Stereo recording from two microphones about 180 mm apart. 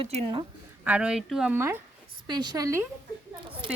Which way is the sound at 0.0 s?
35° right (ahead or behind).